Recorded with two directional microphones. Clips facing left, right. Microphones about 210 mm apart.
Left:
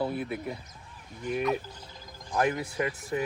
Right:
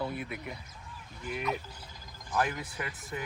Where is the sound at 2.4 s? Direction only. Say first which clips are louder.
Left 6 dB; 25° left (ahead or behind).